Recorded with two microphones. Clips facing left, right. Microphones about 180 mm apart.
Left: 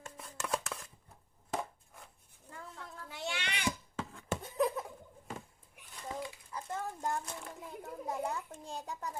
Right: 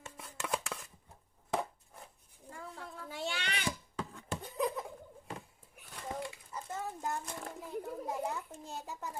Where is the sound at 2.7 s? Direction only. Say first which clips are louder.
Right 5 dB; 35° right (ahead or behind).